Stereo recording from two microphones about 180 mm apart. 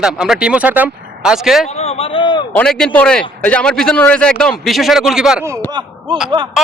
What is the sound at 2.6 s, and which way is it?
A man's voice, 5° left (ahead or behind).